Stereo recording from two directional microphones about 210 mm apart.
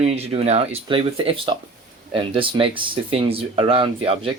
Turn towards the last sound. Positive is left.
turn(degrees=-25)  # may be behind; listen again after turning